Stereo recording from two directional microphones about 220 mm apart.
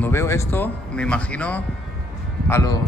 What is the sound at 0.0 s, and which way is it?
Speech, 10° left (ahead or behind).